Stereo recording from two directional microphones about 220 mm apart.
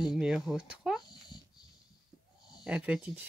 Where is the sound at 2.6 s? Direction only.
5° right (ahead or behind).